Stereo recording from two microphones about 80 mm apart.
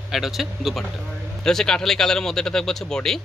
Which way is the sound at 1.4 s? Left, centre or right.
Centre.